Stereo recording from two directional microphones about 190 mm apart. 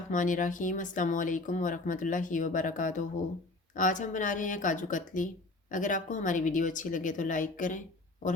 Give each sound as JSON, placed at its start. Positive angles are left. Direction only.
{"t": 0.1, "sound": "speech", "side_deg": 45}